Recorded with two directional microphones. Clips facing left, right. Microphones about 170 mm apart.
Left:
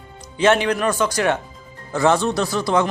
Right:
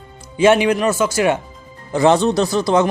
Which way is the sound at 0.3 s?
10° right (ahead or behind).